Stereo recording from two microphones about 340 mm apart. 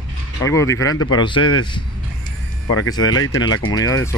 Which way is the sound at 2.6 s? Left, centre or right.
Left.